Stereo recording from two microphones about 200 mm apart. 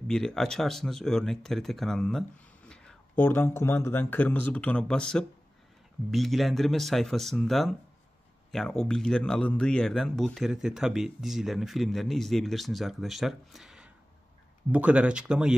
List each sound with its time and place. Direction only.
0.1 s speech: centre (ahead or behind)